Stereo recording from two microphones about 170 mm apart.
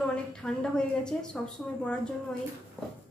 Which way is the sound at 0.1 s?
5° left (ahead or behind).